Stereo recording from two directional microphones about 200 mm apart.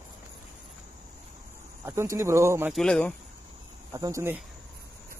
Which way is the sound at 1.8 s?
15° right (ahead or behind).